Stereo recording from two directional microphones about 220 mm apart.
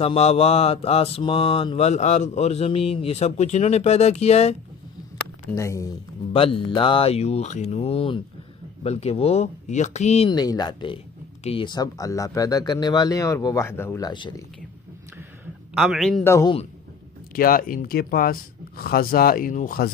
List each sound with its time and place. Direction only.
0.0 s mantra: 25° left (ahead or behind)
5.5 s speech: 15° left (ahead or behind)
6.3 s mantra: 25° left (ahead or behind)
11.4 s speech: 25° left (ahead or behind)
15.7 s a man's voice: centre (ahead or behind)
16.3 s speech: 15° left (ahead or behind)
17.4 s speech: 40° left (ahead or behind)